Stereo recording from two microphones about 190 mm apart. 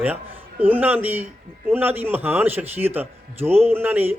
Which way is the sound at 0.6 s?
10° right (ahead or behind).